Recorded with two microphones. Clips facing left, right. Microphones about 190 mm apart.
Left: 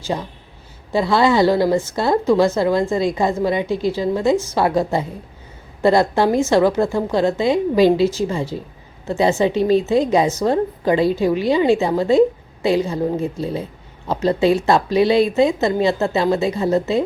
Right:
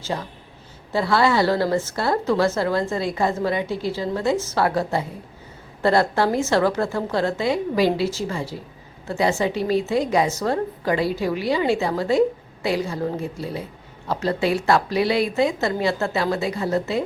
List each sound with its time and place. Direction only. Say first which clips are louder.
0.0 s a woman's voice: left 4 dB; 15° left (ahead or behind)